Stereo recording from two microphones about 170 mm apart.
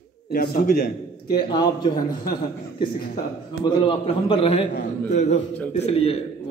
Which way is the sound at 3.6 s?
30° left (ahead or behind).